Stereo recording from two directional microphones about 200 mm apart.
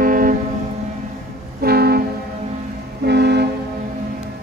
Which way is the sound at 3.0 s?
55° right (ahead or behind).